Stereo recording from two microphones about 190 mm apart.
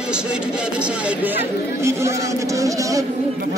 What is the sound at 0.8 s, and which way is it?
A woman's voice, 10° right (ahead or behind).